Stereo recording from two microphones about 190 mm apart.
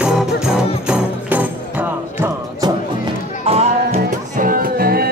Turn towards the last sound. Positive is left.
turn(degrees=-50)  # may be behind; listen again after turning